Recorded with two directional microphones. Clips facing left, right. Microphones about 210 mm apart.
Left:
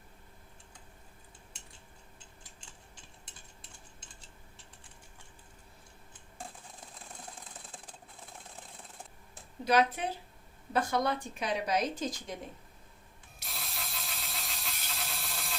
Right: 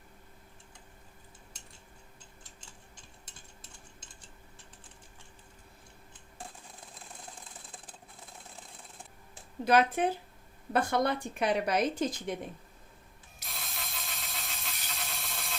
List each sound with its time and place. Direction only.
9.6 s a woman's voice: 55° right (ahead or behind)
13.4 s vehicle: centre (ahead or behind)